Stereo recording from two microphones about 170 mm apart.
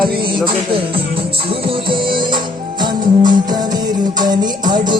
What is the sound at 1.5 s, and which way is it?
Music, 30° right (ahead or behind).